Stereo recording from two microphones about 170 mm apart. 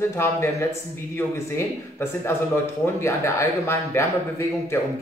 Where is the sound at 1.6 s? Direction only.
15° left (ahead or behind).